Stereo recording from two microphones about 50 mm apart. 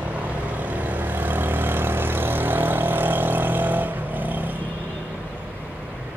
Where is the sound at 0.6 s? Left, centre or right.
Right.